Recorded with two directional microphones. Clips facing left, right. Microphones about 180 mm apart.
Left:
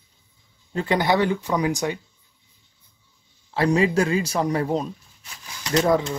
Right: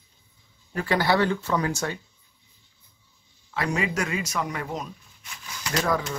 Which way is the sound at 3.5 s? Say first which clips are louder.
Left 8 dB; 30° left (ahead or behind).